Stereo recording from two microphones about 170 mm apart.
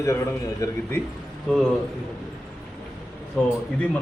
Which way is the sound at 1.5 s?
5° left (ahead or behind).